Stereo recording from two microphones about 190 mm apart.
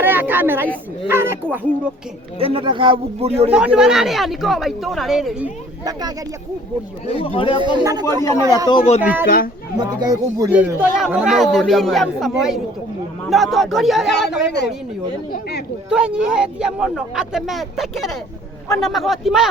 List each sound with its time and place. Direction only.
0.0 s a sound: 10° right (ahead or behind)
1.0 s speech: 10° right (ahead or behind)
2.4 s a man's voice: 30° right (ahead or behind)
3.5 s speech: 5° right (ahead or behind)
5.8 s a man's voice: 20° right (ahead or behind)
7.1 s speech: 30° left (ahead or behind)
7.8 s a man's voice: 20° right (ahead or behind)
8.7 s speech: 30° left (ahead or behind)
9.0 s speech: 10° right (ahead or behind)
9.7 s speech: 20° right (ahead or behind); by 14.3 s centre (ahead or behind)
15.3 s speech: 60° left (ahead or behind)
15.9 s speech: 5° right (ahead or behind)